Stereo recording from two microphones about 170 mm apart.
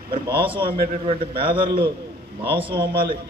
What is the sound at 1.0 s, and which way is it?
A man's voice, 35° right (ahead or behind).